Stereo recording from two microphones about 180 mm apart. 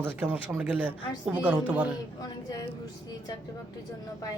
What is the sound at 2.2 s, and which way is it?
Speech, 20° left (ahead or behind).